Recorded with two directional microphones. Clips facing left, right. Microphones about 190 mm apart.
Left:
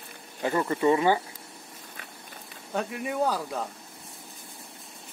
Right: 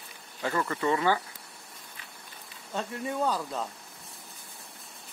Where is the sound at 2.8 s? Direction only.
15° left (ahead or behind).